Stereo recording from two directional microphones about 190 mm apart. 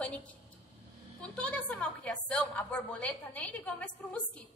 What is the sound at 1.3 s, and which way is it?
A woman's voice, 5° left (ahead or behind).